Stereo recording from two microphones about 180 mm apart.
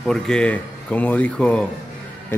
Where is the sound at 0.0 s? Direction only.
5° left (ahead or behind).